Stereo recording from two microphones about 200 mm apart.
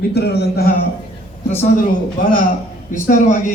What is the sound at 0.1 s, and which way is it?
Speech, 55° left (ahead or behind).